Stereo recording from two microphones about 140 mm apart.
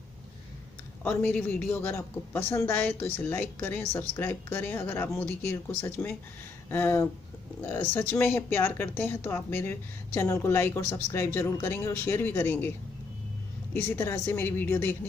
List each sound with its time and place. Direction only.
1.0 s a woman's voice: 10° left (ahead or behind)
13.8 s a woman's voice: 15° left (ahead or behind)